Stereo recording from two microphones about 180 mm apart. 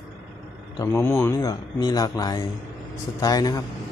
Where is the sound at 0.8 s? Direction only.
15° left (ahead or behind).